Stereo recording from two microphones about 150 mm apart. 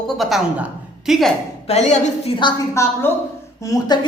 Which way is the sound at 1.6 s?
50° left (ahead or behind).